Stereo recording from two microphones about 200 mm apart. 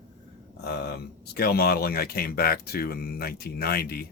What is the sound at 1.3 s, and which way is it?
Speech, 50° left (ahead or behind).